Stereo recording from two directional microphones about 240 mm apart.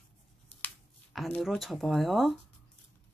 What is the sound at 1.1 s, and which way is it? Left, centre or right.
Speech, centre.